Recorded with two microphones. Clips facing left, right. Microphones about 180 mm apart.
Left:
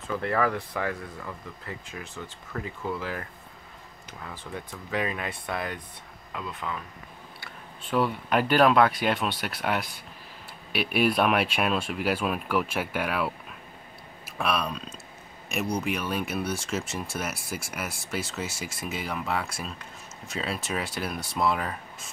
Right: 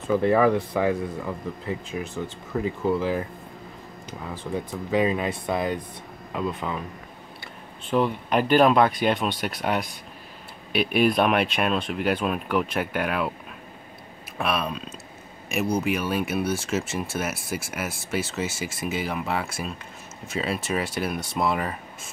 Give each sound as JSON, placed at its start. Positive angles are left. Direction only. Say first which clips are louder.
{"t": 0.1, "sound": "speech", "louder": "right 7 dB", "side_deg": -20}
{"t": 4.9, "sound": "speech", "louder": "right 7 dB", "side_deg": -25}
{"t": 7.9, "sound": "speech", "louder": "right 3 dB", "side_deg": -25}
{"t": 9.0, "sound": "speech", "louder": "right 3 dB", "side_deg": 5}
{"t": 9.3, "sound": "speech", "louder": "right 3 dB", "side_deg": -15}
{"t": 10.7, "sound": "speech", "louder": "right 4 dB", "side_deg": 5}
{"t": 14.4, "sound": "speech", "louder": "right 2 dB", "side_deg": 0}